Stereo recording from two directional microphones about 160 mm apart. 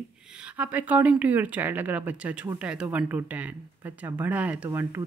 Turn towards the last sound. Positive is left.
turn(degrees=-15)  # may be behind; listen again after turning